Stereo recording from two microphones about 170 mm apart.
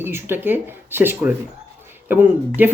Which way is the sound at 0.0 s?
15° right (ahead or behind).